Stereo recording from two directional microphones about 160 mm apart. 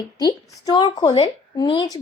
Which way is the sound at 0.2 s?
25° left (ahead or behind).